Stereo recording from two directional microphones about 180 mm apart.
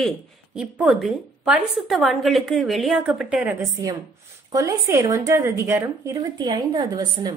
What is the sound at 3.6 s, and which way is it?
A woman's voice, 20° right (ahead or behind).